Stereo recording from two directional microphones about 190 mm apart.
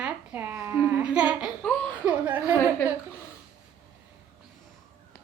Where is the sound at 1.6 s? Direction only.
5° left (ahead or behind).